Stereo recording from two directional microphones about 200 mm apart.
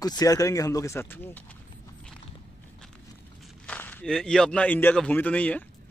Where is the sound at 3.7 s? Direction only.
10° left (ahead or behind).